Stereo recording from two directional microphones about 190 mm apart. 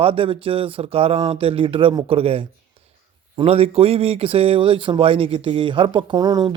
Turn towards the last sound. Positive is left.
turn(degrees=-20)  # may be behind; listen again after turning